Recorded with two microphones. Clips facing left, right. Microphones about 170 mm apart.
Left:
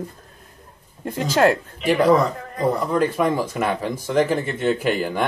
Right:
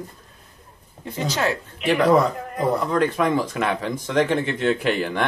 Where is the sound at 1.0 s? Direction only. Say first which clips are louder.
Left 6 dB; 50° left (ahead or behind).